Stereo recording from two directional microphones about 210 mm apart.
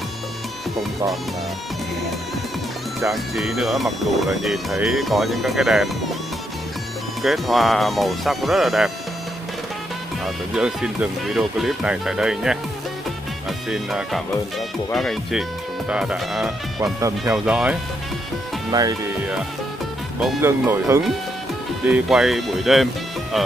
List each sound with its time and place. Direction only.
3.1 s speech: centre (ahead or behind)
7.2 s speech: centre (ahead or behind)
10.2 s speech: 5° right (ahead or behind)
13.7 s speech: 5° right (ahead or behind)
18.7 s speech: 20° right (ahead or behind)
20.4 s speech: 10° right (ahead or behind)